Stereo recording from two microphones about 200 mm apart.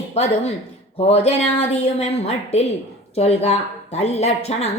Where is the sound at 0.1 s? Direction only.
30° left (ahead or behind).